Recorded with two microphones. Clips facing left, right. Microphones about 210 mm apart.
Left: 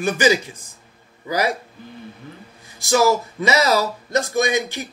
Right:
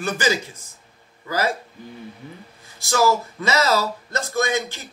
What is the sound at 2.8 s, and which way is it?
Speech, 15° left (ahead or behind).